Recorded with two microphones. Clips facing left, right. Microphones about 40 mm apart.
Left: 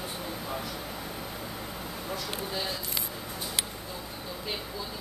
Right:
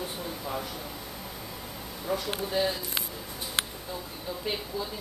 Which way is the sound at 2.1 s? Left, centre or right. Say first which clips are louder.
Right 7 dB; centre.